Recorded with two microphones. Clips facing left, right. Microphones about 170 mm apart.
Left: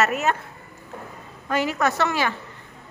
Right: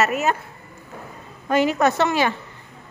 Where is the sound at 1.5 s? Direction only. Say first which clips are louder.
Right 5 dB; 20° right (ahead or behind).